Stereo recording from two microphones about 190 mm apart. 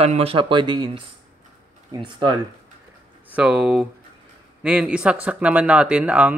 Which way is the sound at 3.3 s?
5° right (ahead or behind).